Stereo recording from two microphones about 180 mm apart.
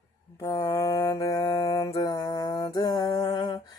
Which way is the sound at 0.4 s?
20° left (ahead or behind).